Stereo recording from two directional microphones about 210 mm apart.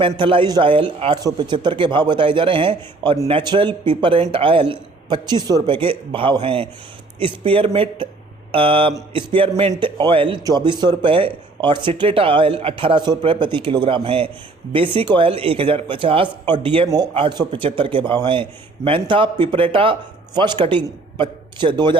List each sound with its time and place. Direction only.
0.0 s a man's voice: 25° right (ahead or behind)